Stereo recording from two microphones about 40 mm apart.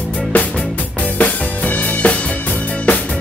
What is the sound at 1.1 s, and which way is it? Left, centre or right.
Music, left.